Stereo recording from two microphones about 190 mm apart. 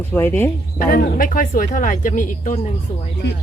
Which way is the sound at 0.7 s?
50° left (ahead or behind).